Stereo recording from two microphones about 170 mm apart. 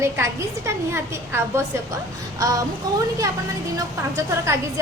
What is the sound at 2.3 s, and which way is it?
Music, 20° right (ahead or behind).